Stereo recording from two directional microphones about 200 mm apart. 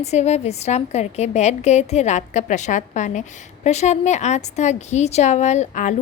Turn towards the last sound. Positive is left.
turn(degrees=35)  # may be behind; listen again after turning